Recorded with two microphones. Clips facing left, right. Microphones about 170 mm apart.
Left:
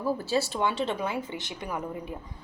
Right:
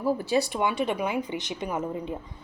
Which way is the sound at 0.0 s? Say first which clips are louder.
Right 3 dB; 15° right (ahead or behind).